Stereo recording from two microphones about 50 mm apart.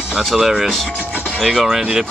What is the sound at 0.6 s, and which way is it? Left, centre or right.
Speech, centre.